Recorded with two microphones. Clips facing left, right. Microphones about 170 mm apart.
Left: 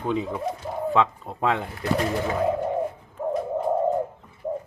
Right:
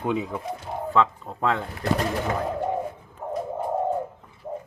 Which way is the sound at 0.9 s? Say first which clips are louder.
Right 1 dB; 10° left (ahead or behind).